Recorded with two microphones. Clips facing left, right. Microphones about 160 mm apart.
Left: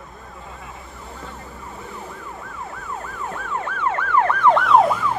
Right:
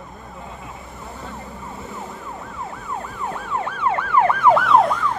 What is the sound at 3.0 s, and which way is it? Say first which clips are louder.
Emergency vehicle: right 1 dB; 15° right (ahead or behind).